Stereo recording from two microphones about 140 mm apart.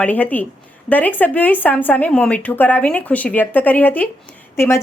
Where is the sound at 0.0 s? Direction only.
10° left (ahead or behind).